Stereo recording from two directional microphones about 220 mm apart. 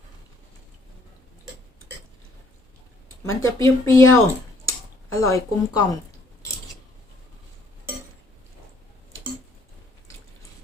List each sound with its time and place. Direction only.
3.2 s speech: 15° left (ahead or behind)